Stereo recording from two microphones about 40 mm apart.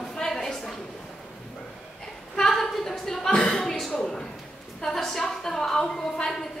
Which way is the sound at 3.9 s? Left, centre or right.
Centre.